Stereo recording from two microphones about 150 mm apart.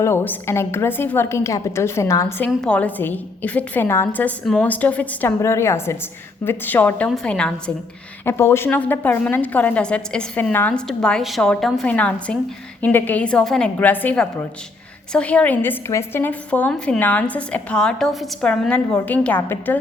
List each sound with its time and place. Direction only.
0.0 s a woman's voice: 15° left (ahead or behind)
2.5 s a woman's voice: 5° left (ahead or behind)
8.2 s a woman's voice: 15° left (ahead or behind)